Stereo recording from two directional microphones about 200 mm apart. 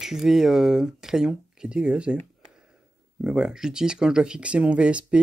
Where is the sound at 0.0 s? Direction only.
Centre (ahead or behind).